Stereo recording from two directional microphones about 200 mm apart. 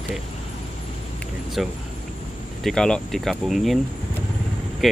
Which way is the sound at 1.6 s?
Centre (ahead or behind).